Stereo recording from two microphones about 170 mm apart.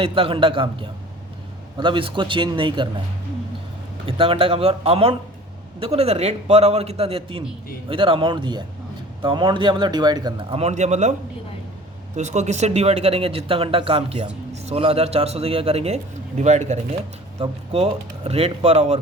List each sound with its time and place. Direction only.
0.0 s a man's voice: 35° right (ahead or behind)
4.0 s a man's voice: 35° right (ahead or behind)
10.6 s speech: 40° right (ahead or behind)
12.1 s speech: 45° right (ahead or behind)
17.4 s speech: 30° right (ahead or behind)